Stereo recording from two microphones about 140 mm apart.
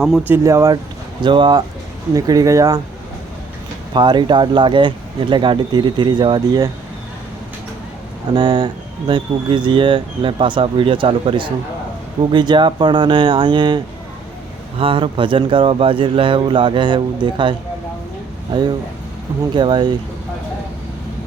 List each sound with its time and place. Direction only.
0.3 s speech: 20° right (ahead or behind)
1.2 s speech: 35° right (ahead or behind)
3.9 s speech: 35° right (ahead or behind)
8.3 s speech: 30° right (ahead or behind)
18.5 s speech: 30° right (ahead or behind)